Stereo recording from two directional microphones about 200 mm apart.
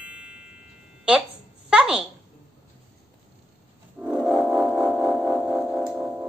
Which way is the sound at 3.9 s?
5° right (ahead or behind).